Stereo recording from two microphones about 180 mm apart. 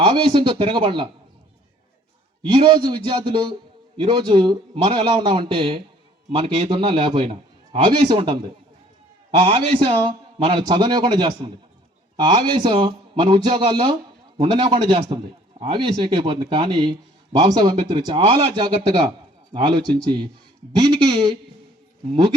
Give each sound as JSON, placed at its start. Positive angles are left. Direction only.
{"t": 0.0, "sound": "a man's voice", "side_deg": -30}
{"t": 2.5, "sound": "a man's voice", "side_deg": -25}
{"t": 9.4, "sound": "a man's voice", "side_deg": -30}